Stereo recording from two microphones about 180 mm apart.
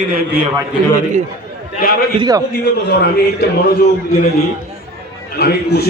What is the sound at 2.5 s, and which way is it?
A man's voice, 65° left (ahead or behind).